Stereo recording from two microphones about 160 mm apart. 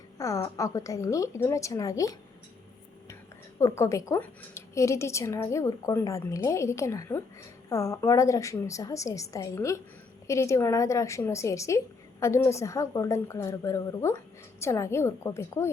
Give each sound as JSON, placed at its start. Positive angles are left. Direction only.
{"t": 0.2, "sound": "a woman's voice", "side_deg": 20}
{"t": 3.6, "sound": "a woman's voice", "side_deg": 20}